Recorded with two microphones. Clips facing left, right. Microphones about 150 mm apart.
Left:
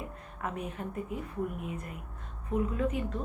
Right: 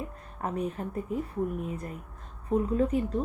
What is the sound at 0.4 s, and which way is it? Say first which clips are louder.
A woman's voice: right 5 dB; 35° right (ahead or behind).